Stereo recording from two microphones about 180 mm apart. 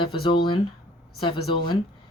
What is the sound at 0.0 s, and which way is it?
Speech, 25° left (ahead or behind).